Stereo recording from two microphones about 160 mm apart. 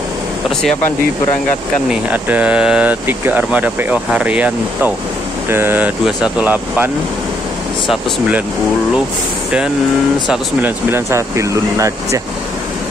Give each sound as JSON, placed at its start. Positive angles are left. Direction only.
{"t": 1.9, "sound": "speech", "side_deg": -10}
{"t": 10.3, "sound": "speech", "side_deg": -15}